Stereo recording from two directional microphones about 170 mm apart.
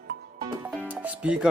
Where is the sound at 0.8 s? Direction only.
5° right (ahead or behind).